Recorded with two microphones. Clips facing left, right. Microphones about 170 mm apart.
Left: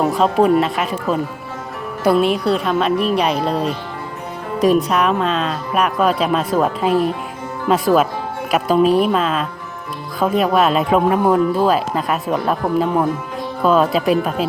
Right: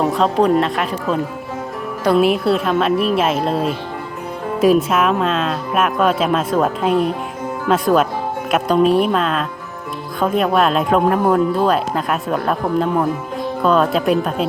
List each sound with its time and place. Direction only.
0.0 s speech: 5° left (ahead or behind)